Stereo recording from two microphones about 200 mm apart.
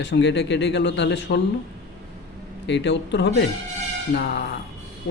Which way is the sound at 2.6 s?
60° left (ahead or behind).